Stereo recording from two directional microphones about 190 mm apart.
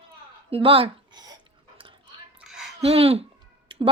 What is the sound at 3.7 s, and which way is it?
Clicking, 25° right (ahead or behind).